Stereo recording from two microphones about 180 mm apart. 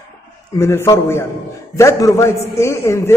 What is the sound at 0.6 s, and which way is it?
A man's voice, 15° left (ahead or behind).